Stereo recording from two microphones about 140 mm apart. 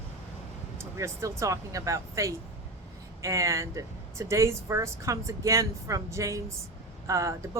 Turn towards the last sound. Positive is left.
turn(degrees=-20)  # may be behind; listen again after turning